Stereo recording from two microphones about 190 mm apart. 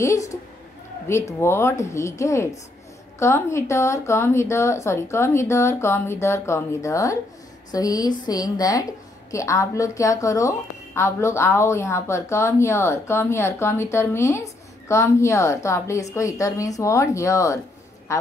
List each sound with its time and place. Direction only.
0.0 s a woman's voice: 15° left (ahead or behind)